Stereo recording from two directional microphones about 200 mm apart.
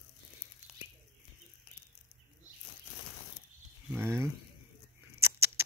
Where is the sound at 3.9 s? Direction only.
10° right (ahead or behind).